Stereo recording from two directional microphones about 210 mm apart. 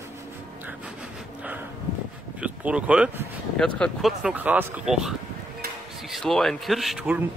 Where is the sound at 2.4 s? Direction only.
5° right (ahead or behind).